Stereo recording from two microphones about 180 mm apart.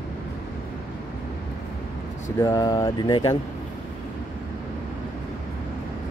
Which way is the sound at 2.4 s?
20° left (ahead or behind).